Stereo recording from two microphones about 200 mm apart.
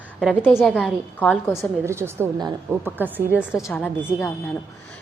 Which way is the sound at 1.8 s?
15° right (ahead or behind).